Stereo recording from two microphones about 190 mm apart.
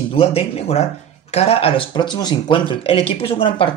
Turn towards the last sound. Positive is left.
turn(degrees=30)  # may be behind; listen again after turning